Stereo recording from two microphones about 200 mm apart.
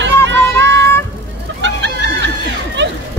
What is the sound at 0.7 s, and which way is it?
Vehicle, 15° left (ahead or behind).